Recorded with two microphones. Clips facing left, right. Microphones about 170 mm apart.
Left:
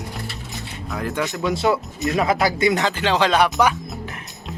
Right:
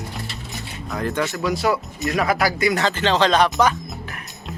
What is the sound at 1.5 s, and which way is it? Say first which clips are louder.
Speech: left 1 dB; 25° left (ahead or behind).